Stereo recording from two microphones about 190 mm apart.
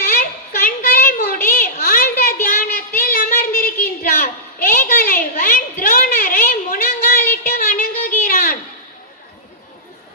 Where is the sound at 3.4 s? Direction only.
50° left (ahead or behind).